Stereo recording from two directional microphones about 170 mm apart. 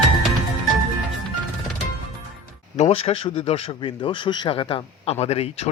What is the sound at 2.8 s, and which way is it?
Speech, 35° left (ahead or behind).